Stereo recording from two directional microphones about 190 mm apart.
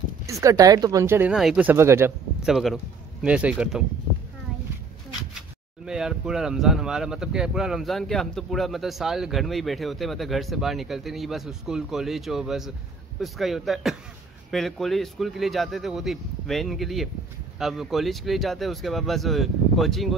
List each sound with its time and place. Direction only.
0.3 s speech: 15° right (ahead or behind)
1.3 s speech: centre (ahead or behind)
2.5 s speech: centre (ahead or behind)
5.9 s speech: 5° right (ahead or behind)